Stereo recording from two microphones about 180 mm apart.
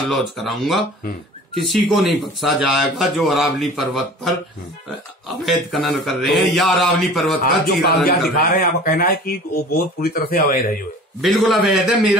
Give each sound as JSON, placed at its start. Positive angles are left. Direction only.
{"t": 0.1, "sound": "speech", "side_deg": 0}
{"t": 5.4, "sound": "speech", "side_deg": 0}
{"t": 7.4, "sound": "speech", "side_deg": 55}
{"t": 11.1, "sound": "speech", "side_deg": 0}